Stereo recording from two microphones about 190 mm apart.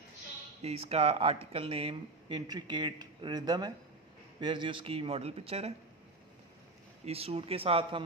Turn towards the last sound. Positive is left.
turn(degrees=-30)  # may be behind; listen again after turning